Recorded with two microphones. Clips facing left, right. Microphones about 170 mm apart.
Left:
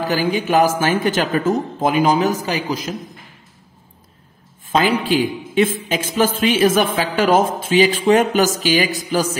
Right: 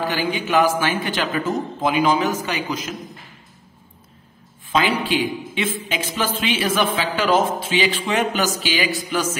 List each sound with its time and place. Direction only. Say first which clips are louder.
0.0 s a man's voice: left 4 dB; 40° left (ahead or behind)
4.7 s a woman's voice: left 3 dB; 45° left (ahead or behind)